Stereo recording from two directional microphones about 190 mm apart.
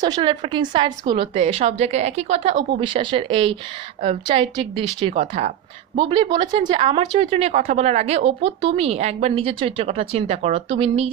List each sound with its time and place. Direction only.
0.0 s a woman's voice: 20° right (ahead or behind)